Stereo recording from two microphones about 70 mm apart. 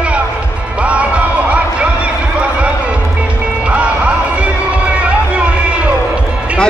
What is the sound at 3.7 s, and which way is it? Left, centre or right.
Music, centre.